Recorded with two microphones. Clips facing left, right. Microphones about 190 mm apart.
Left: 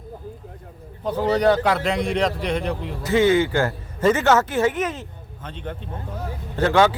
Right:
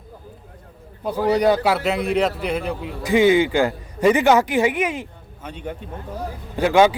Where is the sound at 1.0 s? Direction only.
10° right (ahead or behind).